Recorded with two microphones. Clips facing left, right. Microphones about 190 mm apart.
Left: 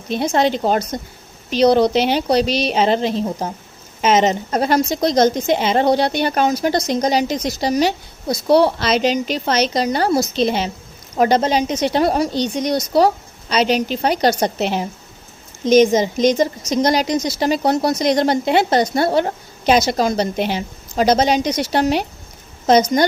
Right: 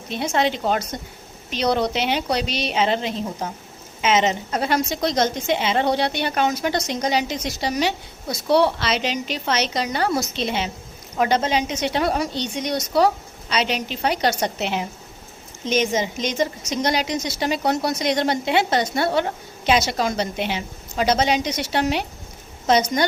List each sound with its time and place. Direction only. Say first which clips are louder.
0.1 s a woman's voice: left 5 dB; 40° left (ahead or behind)